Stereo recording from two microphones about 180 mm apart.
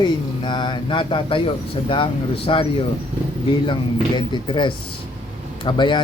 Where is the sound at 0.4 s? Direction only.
25° left (ahead or behind).